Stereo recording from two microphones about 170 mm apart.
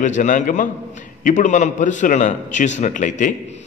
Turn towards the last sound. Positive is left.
turn(degrees=45)  # may be behind; listen again after turning